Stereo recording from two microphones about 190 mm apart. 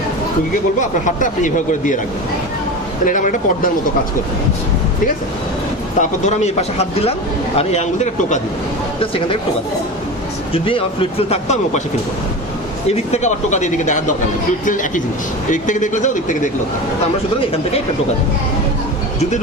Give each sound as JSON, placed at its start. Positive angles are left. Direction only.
{"t": 0.8, "sound": "speech", "side_deg": 40}
{"t": 3.1, "sound": "speech", "side_deg": 45}
{"t": 6.0, "sound": "a man's voice", "side_deg": 35}
{"t": 10.5, "sound": "a man's voice", "side_deg": 30}
{"t": 12.9, "sound": "a man's voice", "side_deg": 35}